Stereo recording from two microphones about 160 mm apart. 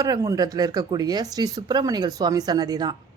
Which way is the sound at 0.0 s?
20° right (ahead or behind).